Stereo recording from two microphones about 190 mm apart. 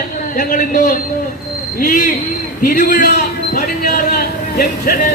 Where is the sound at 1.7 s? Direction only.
50° left (ahead or behind).